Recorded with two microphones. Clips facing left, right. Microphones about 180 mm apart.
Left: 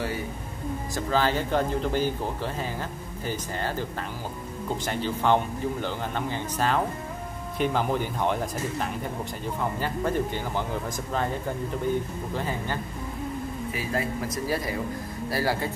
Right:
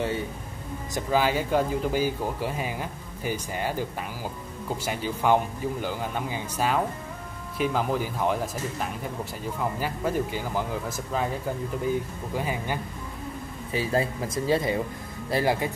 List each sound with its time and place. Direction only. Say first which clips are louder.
0.9 s speech: right 1 dB; 10° right (ahead or behind)
4.8 s speech: even; 10° right (ahead or behind)
12.4 s speech: right 2 dB; 10° right (ahead or behind)
13.7 s speech: right 5 dB; 30° right (ahead or behind)